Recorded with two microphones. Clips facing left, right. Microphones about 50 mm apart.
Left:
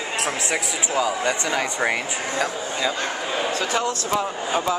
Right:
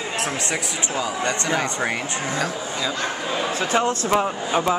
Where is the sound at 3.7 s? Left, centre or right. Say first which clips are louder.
Right 6 dB; right.